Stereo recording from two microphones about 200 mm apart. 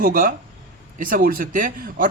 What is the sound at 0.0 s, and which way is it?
Speech, 45° right (ahead or behind).